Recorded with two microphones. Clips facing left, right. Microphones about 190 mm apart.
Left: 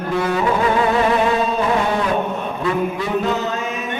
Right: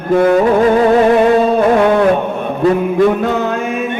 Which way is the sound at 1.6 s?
55° right (ahead or behind).